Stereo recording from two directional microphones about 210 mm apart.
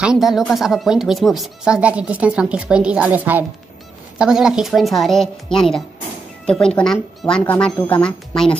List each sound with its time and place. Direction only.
0.0 s speech: centre (ahead or behind)